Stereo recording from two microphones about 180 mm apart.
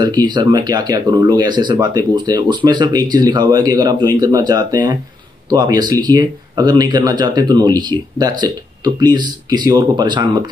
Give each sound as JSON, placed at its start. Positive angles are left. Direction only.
{"t": 0.0, "sound": "speech", "side_deg": -25}